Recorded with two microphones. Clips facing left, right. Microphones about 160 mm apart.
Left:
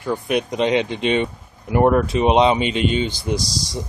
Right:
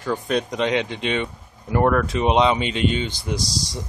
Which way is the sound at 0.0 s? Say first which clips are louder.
Left 2 dB; 10° left (ahead or behind).